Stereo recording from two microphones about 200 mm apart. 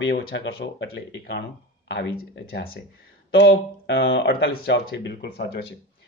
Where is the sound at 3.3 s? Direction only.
60° left (ahead or behind).